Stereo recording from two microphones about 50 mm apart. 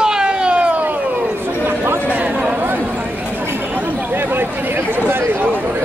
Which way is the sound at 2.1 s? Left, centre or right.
Right.